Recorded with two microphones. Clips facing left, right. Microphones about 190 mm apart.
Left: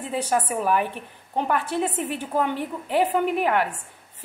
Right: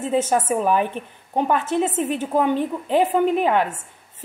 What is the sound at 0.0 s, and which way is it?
A woman's voice, 20° right (ahead or behind).